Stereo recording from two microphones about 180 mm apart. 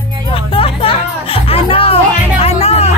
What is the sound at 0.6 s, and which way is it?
Music, 30° left (ahead or behind).